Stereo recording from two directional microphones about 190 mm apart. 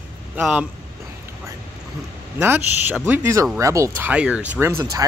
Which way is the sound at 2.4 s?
10° right (ahead or behind).